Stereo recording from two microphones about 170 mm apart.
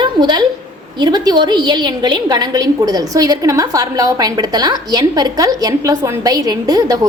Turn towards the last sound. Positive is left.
turn(degrees=-20)  # may be behind; listen again after turning